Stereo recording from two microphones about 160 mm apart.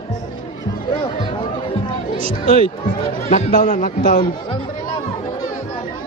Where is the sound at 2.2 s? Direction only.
40° right (ahead or behind).